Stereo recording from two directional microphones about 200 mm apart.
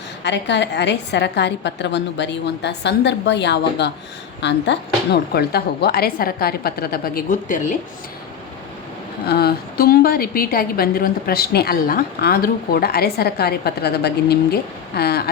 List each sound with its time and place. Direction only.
0.2 s a woman's voice: 60° left (ahead or behind); by 7.8 s 40° left (ahead or behind)
9.2 s a woman's voice: 50° left (ahead or behind)